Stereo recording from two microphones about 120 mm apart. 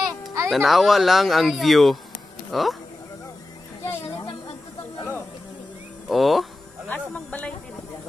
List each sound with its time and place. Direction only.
0.0 s a sound: 25° right (ahead or behind)
0.5 s speech: centre (ahead or behind)
4.3 s snake: 45° left (ahead or behind)
6.0 s speech: centre (ahead or behind)
6.9 s speech: 10° left (ahead or behind)